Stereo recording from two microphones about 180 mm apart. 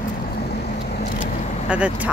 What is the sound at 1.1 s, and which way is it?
Vehicle, 50° left (ahead or behind).